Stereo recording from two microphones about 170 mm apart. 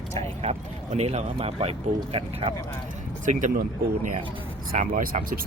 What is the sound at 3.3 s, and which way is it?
Speech, 50° right (ahead or behind).